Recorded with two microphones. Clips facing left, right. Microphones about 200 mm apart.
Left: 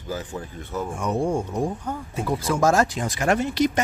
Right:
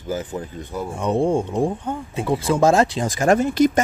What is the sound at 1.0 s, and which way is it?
Speech, 30° right (ahead or behind).